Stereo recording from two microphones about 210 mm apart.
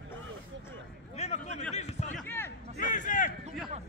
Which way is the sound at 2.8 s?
35° left (ahead or behind).